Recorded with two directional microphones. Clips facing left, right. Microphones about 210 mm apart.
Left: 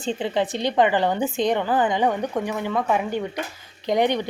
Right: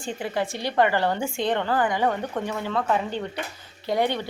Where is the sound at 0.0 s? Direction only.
20° left (ahead or behind).